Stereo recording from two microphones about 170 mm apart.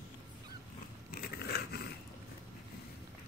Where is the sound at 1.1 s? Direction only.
65° left (ahead or behind).